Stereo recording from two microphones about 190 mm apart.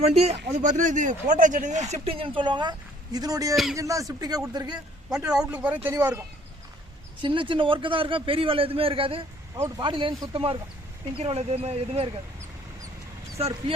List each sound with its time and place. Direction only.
0.0 s speech: 35° right (ahead or behind)
1.9 s a man's voice: 30° right (ahead or behind)
3.5 s speech: centre (ahead or behind)
3.8 s a man's voice: 15° right (ahead or behind)
5.0 s a man's voice: 5° right (ahead or behind)
7.2 s a man's voice: 25° right (ahead or behind)
13.4 s a man's voice: 25° right (ahead or behind)